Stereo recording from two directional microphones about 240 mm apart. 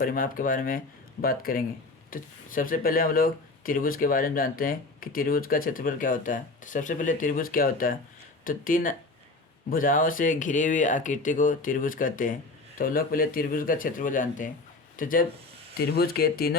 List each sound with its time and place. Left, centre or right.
0.0 s speech: left